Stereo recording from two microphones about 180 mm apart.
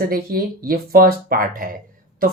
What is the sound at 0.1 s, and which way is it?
Speech, 55° right (ahead or behind).